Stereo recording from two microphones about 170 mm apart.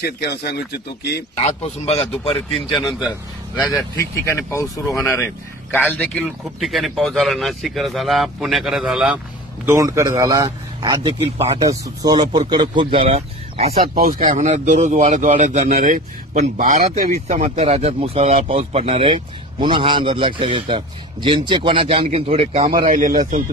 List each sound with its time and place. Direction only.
0.0 s speech: 70° left (ahead or behind)
1.3 s speech: 40° left (ahead or behind)
3.7 s speech: 20° left (ahead or behind); by 9.2 s 5° right (ahead or behind)
9.7 s speech: 20° right (ahead or behind); by 13.7 s 35° right (ahead or behind)
13.9 s speech: 55° right (ahead or behind); by 22.8 s 35° right (ahead or behind)
22.8 s speech: 50° right (ahead or behind)